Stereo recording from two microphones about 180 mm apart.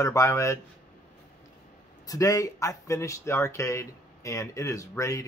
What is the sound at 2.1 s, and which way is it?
Speech, 15° left (ahead or behind).